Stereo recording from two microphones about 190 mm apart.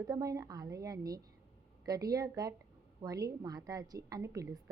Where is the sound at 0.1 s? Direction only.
20° right (ahead or behind).